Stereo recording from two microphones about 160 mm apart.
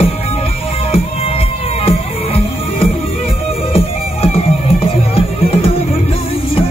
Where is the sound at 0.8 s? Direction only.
40° left (ahead or behind).